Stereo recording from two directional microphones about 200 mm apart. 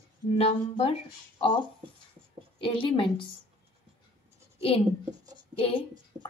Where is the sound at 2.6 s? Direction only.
25° left (ahead or behind).